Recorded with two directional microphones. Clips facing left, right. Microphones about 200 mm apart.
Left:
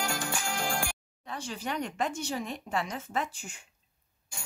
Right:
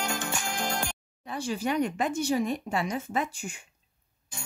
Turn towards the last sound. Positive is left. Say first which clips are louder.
# right 3 dB
turn(degrees=-10)  # may be behind; listen again after turning